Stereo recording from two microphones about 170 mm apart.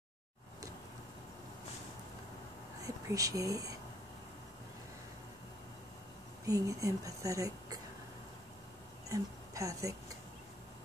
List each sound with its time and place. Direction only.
2.8 s speech: 20° right (ahead or behind)
6.4 s a woman's voice: 20° right (ahead or behind)
9.1 s a woman's voice: 20° right (ahead or behind)